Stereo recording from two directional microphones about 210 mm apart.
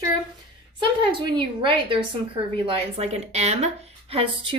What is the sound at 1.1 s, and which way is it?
A woman's voice, 25° right (ahead or behind).